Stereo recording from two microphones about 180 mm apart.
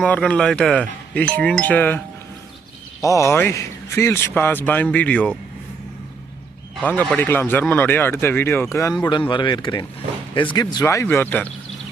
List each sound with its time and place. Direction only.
0.0 s speech: 5° left (ahead or behind)
3.0 s a man's voice: 15° left (ahead or behind)
6.8 s a man's voice: 10° left (ahead or behind)